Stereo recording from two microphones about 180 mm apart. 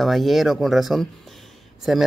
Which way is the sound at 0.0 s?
Centre (ahead or behind).